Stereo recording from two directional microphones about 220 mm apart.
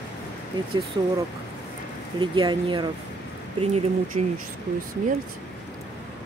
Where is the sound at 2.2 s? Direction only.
20° right (ahead or behind).